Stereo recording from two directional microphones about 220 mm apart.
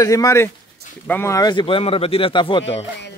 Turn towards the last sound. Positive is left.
turn(degrees=55)  # may be behind; listen again after turning